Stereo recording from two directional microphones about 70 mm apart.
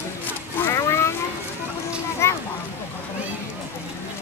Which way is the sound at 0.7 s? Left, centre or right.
Left.